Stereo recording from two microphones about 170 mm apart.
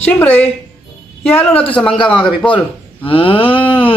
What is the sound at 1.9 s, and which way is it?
Speech, 30° left (ahead or behind).